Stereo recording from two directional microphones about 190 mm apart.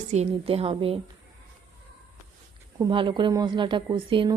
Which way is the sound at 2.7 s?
25° right (ahead or behind).